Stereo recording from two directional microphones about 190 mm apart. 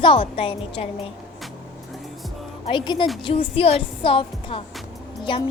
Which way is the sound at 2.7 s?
25° left (ahead or behind).